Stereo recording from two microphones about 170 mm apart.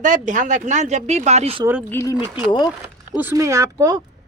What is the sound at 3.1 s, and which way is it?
Speech, 15° right (ahead or behind).